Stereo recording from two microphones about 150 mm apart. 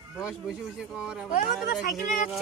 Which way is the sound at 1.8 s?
70° left (ahead or behind).